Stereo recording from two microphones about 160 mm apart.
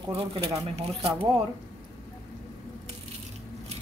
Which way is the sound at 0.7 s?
40° right (ahead or behind).